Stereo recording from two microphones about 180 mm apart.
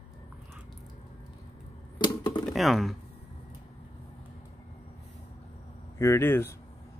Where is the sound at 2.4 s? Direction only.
Centre (ahead or behind).